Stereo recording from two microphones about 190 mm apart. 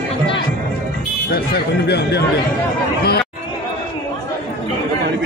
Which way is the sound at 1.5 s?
60° left (ahead or behind).